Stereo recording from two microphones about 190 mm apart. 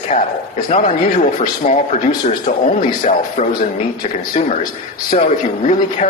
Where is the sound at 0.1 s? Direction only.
35° left (ahead or behind).